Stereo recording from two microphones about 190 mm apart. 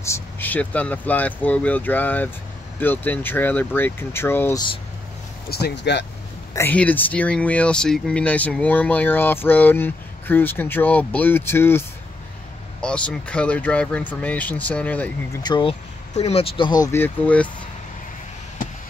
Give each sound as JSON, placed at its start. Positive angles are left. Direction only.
{"t": 0.0, "sound": "speech", "side_deg": 10}
{"t": 5.5, "sound": "speech", "side_deg": 60}
{"t": 6.5, "sound": "speech", "side_deg": 10}
{"t": 12.8, "sound": "speech", "side_deg": 5}
{"t": 15.4, "sound": "speech", "side_deg": 25}